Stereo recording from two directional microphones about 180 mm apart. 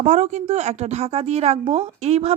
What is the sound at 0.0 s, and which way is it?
A woman's voice, 40° right (ahead or behind).